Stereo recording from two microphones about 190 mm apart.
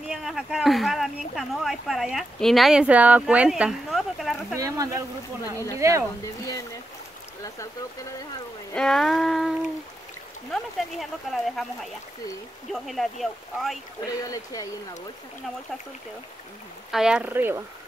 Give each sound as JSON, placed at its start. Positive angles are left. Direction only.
{"t": 0.1, "sound": "speech", "side_deg": 0}
{"t": 4.6, "sound": "speech", "side_deg": -20}
{"t": 6.2, "sound": "speech", "side_deg": 15}
{"t": 8.7, "sound": "speech", "side_deg": 0}
{"t": 12.7, "sound": "speech", "side_deg": 0}
{"t": 14.2, "sound": "speech", "side_deg": 20}
{"t": 16.9, "sound": "speech", "side_deg": -5}